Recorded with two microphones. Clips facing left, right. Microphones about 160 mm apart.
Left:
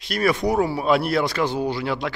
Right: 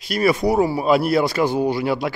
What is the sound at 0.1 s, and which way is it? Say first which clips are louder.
A man's voice: right 3 dB; 5° right (ahead or behind).